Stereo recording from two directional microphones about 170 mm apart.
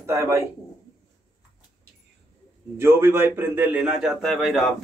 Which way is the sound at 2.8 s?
15° right (ahead or behind).